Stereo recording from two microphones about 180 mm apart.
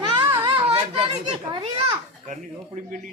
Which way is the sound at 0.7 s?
30° right (ahead or behind).